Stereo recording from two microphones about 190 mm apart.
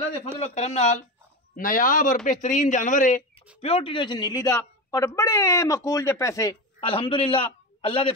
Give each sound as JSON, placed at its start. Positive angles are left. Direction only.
{"t": 0.4, "sound": "speech", "side_deg": 35}
{"t": 3.6, "sound": "speech", "side_deg": 30}
{"t": 6.8, "sound": "a man's voice", "side_deg": 30}